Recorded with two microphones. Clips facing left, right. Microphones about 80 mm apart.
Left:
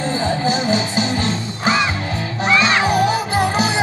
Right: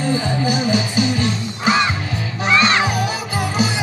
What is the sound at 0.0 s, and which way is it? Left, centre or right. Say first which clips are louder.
Music: even; left.